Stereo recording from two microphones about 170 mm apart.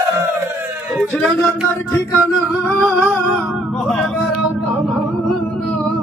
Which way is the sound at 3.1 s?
5° left (ahead or behind).